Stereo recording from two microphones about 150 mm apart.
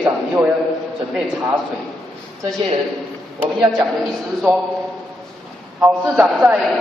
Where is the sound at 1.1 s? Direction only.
10° right (ahead or behind).